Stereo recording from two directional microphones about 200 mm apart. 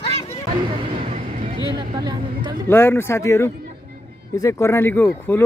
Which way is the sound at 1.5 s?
25° right (ahead or behind).